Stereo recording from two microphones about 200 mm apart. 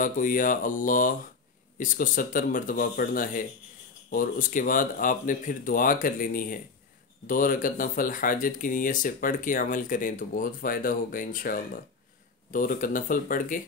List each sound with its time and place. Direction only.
0.0 s speech: 40° left (ahead or behind)